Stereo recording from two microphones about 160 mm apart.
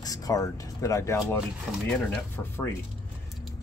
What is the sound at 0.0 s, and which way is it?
Speech, 20° left (ahead or behind).